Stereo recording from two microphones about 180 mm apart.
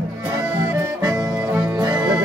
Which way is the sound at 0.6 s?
15° right (ahead or behind).